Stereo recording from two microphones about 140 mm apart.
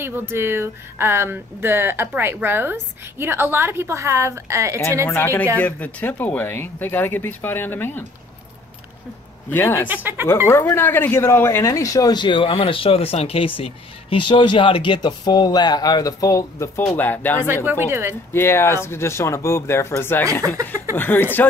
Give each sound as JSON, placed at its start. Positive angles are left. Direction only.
{"t": 0.3, "sound": "speech", "side_deg": -15}
{"t": 5.0, "sound": "speech", "side_deg": 15}
{"t": 9.5, "sound": "speech", "side_deg": 15}
{"t": 9.8, "sound": "speech", "side_deg": -15}
{"t": 10.5, "sound": "speech", "side_deg": 15}
{"t": 17.6, "sound": "speech", "side_deg": -15}
{"t": 18.3, "sound": "speech", "side_deg": 20}
{"t": 20.4, "sound": "speech", "side_deg": -25}
{"t": 20.9, "sound": "speech", "side_deg": 15}